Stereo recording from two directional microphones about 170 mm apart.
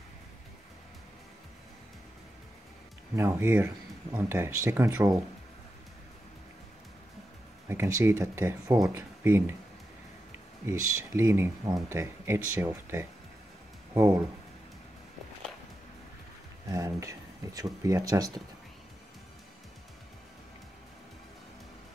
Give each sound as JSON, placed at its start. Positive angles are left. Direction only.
{"t": 3.2, "sound": "speech", "side_deg": -15}
{"t": 7.6, "sound": "speech", "side_deg": -15}
{"t": 10.7, "sound": "speech", "side_deg": -15}
{"t": 16.6, "sound": "speech", "side_deg": -20}